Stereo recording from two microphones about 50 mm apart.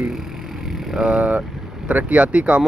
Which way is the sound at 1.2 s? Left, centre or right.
Right.